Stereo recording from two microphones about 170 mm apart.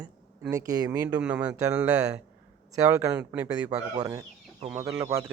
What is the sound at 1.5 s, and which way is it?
Speech, 20° right (ahead or behind).